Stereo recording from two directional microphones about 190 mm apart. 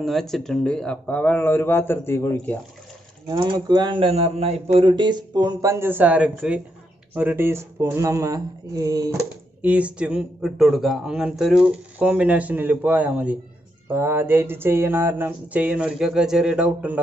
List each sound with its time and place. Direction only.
0.0 s speech: centre (ahead or behind)
3.3 s speech: 25° right (ahead or behind)
9.6 s a man's voice: 10° right (ahead or behind)